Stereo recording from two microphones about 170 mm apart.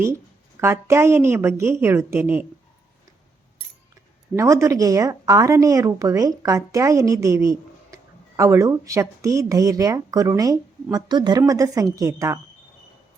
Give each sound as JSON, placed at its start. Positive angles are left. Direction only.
{"t": 0.6, "sound": "a woman's voice", "side_deg": -15}
{"t": 4.4, "sound": "a woman's voice", "side_deg": -15}